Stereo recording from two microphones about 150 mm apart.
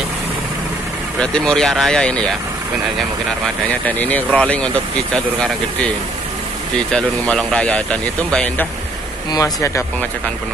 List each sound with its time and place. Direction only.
1.2 s speech: 5° left (ahead or behind)
3.8 s speech: 10° left (ahead or behind)
6.9 s speech: 5° left (ahead or behind)
9.3 s speech: 20° left (ahead or behind)